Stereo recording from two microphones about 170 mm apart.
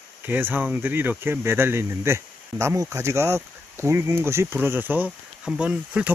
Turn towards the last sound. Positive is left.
turn(degrees=-5)  # may be behind; listen again after turning